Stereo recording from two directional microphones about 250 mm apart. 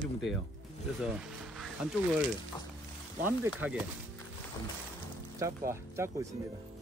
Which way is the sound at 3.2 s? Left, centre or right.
Centre.